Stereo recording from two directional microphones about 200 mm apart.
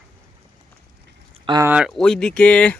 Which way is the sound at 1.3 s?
25° right (ahead or behind).